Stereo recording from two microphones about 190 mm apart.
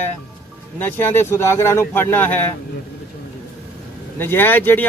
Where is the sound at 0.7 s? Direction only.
10° left (ahead or behind).